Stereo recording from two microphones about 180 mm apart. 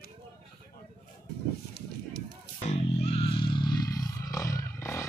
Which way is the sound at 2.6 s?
35° left (ahead or behind).